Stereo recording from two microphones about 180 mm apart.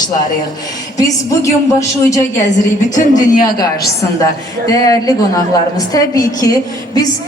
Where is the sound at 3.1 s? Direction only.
50° left (ahead or behind).